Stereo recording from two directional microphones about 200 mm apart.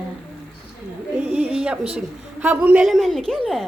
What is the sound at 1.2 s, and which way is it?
A woman's voice, 10° right (ahead or behind).